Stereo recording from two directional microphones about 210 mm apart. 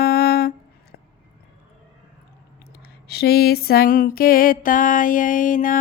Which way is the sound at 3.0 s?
50° left (ahead or behind).